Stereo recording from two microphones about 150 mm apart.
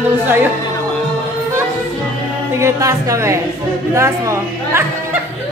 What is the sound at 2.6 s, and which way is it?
A woman's voice, 20° right (ahead or behind).